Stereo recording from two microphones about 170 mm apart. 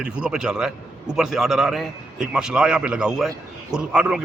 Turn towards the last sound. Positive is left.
turn(degrees=-5)  # may be behind; listen again after turning